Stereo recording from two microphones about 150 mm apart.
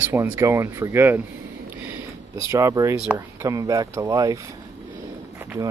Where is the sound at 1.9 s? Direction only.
20° right (ahead or behind).